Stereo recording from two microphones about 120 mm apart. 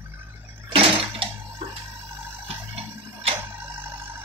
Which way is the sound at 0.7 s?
50° right (ahead or behind).